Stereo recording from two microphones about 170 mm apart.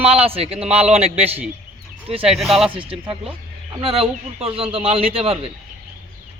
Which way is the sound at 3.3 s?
30° right (ahead or behind).